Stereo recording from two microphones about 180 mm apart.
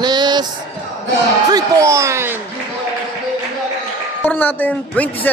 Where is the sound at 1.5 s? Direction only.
15° right (ahead or behind).